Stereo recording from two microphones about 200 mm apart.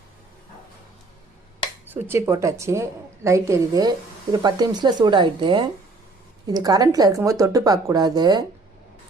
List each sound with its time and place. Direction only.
1.9 s a woman's voice: 15° right (ahead or behind)